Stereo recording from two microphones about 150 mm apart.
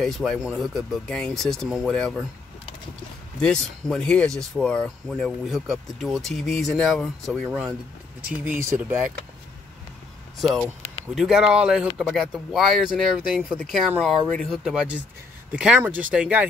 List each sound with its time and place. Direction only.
0.0 s speech: 5° left (ahead or behind)
3.3 s speech: 5° left (ahead or behind)
8.5 s speech: 65° right (ahead or behind)
8.8 s speech: 15° right (ahead or behind)
10.3 s speech: centre (ahead or behind)